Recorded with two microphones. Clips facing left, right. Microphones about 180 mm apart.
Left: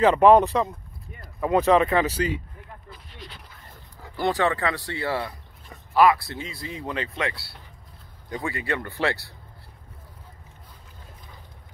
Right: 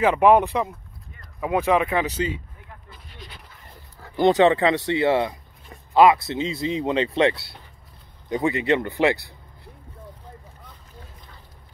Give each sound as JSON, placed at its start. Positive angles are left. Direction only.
{"t": 0.0, "sound": "speech", "side_deg": -10}
{"t": 4.1, "sound": "speech", "side_deg": -20}